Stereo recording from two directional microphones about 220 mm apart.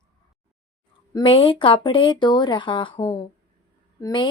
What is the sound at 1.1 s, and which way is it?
A woman's voice, 25° left (ahead or behind).